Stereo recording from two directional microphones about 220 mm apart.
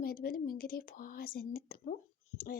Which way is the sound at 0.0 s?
40° left (ahead or behind).